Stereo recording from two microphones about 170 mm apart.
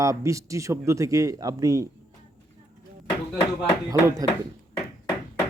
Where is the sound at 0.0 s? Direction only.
20° right (ahead or behind).